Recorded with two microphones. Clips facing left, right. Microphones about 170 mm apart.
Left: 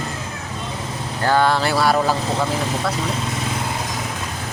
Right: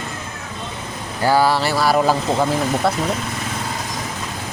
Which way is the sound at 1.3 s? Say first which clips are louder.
Right 1 dB; 5° right (ahead or behind).